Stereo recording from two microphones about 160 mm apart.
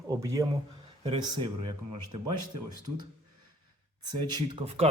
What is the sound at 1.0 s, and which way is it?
Speech, 35° right (ahead or behind).